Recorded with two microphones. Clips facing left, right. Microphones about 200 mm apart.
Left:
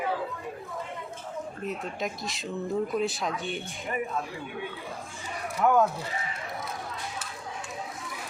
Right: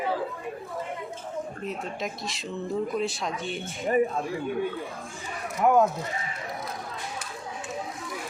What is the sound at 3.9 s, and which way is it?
A man's voice, 40° right (ahead or behind).